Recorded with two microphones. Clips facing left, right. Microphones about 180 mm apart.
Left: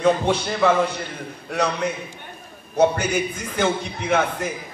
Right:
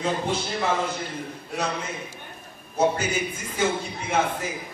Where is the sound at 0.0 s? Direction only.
70° left (ahead or behind).